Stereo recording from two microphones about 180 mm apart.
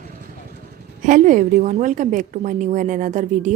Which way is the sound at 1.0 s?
45° right (ahead or behind).